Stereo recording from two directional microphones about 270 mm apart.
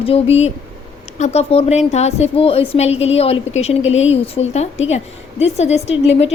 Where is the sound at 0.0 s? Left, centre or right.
Left.